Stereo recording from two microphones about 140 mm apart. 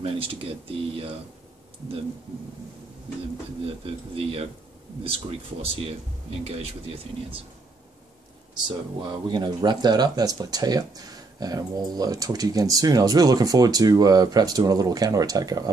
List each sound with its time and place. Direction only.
0.0 s speech: 40° right (ahead or behind)
3.6 s speech: 40° right (ahead or behind)
8.6 s speech: 35° right (ahead or behind)